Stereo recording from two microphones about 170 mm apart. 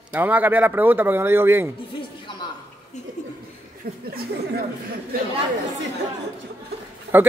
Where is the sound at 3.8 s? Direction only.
60° right (ahead or behind).